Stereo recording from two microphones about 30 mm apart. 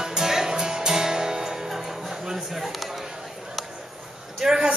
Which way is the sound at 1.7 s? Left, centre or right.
Centre.